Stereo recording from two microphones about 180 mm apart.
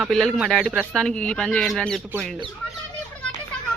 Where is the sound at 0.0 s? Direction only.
Centre (ahead or behind).